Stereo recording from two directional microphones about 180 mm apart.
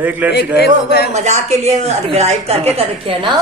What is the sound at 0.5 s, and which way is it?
Speech, 60° left (ahead or behind).